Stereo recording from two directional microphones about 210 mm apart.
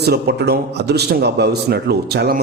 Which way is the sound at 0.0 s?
50° right (ahead or behind).